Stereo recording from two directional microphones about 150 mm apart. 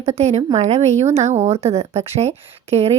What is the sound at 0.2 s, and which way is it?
A woman's voice, 45° right (ahead or behind).